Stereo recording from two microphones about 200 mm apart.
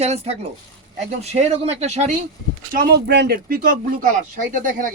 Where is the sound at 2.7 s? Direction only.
50° right (ahead or behind).